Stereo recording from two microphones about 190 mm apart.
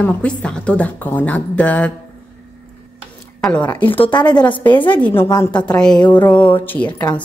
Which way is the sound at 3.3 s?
5° left (ahead or behind).